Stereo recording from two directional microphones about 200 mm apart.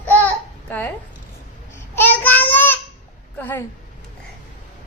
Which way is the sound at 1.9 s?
10° left (ahead or behind).